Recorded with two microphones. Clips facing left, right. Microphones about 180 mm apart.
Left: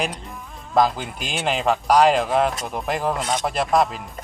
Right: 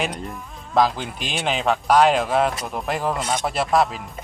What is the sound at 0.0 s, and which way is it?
Speech, centre (ahead or behind).